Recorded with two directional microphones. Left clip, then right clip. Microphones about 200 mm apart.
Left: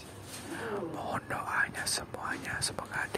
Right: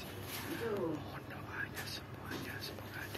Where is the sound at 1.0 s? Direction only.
40° left (ahead or behind).